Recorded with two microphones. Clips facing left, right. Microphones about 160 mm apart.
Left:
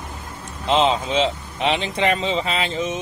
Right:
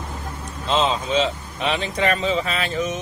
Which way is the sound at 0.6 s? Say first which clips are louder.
Left 2 dB; 20° left (ahead or behind).